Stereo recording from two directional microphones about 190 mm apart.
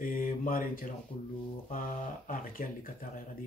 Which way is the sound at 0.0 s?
45° left (ahead or behind).